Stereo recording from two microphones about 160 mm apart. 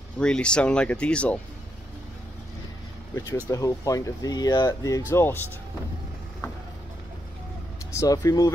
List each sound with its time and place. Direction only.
0.2 s speech: 5° left (ahead or behind)
3.4 s speech: 20° left (ahead or behind)
7.9 s speech: 20° left (ahead or behind)